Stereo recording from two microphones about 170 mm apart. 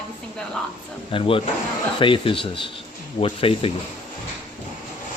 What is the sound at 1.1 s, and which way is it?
Speech, 30° left (ahead or behind).